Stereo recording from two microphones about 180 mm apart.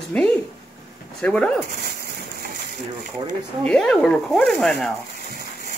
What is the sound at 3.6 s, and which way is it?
Speech, 5° left (ahead or behind).